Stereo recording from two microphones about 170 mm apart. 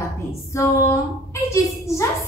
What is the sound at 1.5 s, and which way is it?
Speech, 15° left (ahead or behind).